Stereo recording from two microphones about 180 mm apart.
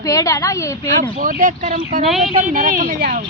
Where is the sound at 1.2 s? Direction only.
50° right (ahead or behind).